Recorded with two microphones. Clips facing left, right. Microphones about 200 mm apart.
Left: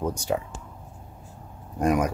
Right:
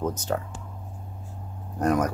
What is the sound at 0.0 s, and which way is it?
Speech, 10° left (ahead or behind).